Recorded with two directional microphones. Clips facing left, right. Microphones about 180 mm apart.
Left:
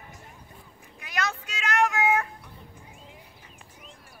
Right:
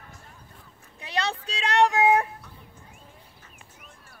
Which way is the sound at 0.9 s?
30° right (ahead or behind).